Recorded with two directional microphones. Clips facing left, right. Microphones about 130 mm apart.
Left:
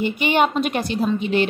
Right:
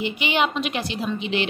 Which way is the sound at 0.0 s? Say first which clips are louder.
Left 4 dB; 50° left (ahead or behind).